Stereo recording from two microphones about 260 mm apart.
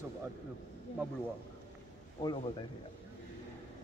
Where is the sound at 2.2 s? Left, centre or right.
Centre.